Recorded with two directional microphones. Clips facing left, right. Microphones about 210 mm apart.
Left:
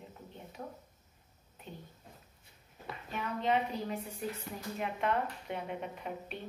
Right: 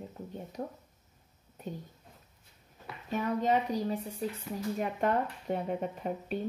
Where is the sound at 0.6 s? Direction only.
35° right (ahead or behind).